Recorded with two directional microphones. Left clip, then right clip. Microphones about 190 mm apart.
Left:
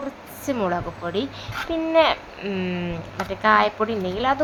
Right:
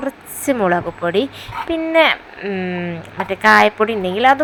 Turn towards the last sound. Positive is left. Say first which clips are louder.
# right 9 dB
turn(degrees=-20)  # may be behind; listen again after turning